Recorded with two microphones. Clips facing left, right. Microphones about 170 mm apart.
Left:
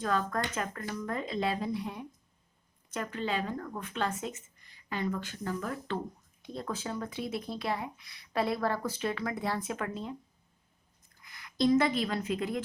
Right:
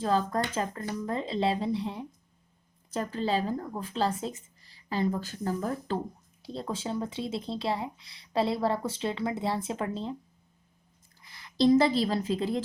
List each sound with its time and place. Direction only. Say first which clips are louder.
0.0 s speech: right 4 dB; 30° right (ahead or behind)
11.2 s a woman's voice: right 4 dB; 30° right (ahead or behind)